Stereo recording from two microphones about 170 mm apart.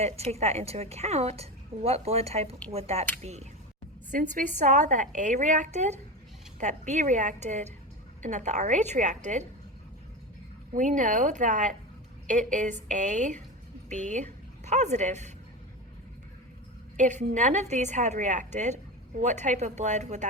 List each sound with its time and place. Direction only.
0.0 s a woman's voice: 40° right (ahead or behind)
10.8 s a woman's voice: 45° right (ahead or behind)
17.0 s a woman's voice: 45° right (ahead or behind)